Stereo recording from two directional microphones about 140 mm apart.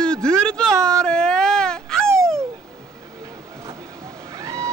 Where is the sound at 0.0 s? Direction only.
5° left (ahead or behind).